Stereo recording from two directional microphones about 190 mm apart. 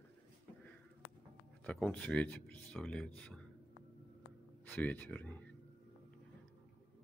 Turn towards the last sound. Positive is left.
turn(degrees=10)  # may be behind; listen again after turning